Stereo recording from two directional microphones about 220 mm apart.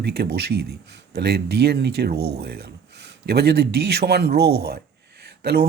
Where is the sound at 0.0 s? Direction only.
45° right (ahead or behind).